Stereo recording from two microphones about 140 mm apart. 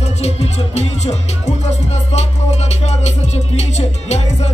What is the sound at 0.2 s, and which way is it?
Music, 50° left (ahead or behind).